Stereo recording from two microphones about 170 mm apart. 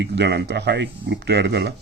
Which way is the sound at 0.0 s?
85° right.